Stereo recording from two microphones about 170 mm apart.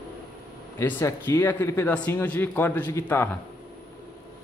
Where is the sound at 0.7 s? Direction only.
15° left (ahead or behind).